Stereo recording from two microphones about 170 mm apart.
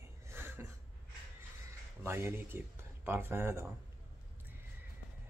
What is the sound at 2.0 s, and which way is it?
Speech, 15° right (ahead or behind).